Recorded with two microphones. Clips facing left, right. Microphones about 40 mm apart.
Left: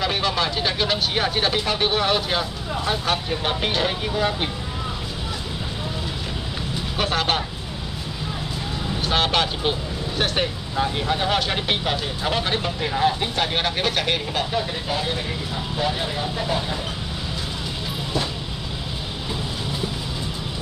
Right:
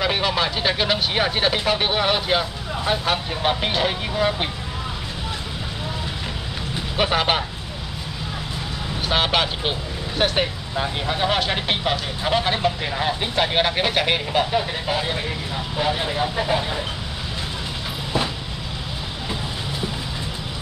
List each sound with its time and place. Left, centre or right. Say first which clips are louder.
0.0 s speech: right 1 dB; centre
7.0 s speech: right 3 dB; centre
9.0 s speech: right 1 dB; centre